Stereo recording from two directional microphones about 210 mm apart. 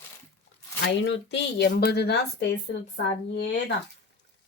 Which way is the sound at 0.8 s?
55° left (ahead or behind).